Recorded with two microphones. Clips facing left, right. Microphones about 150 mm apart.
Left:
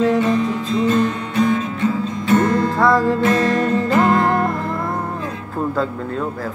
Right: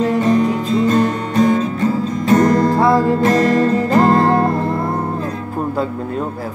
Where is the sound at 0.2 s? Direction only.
40° right (ahead or behind).